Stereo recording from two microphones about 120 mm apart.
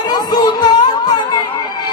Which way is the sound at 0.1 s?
35° left (ahead or behind).